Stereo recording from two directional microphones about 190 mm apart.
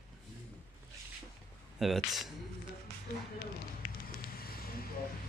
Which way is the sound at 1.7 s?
Centre (ahead or behind).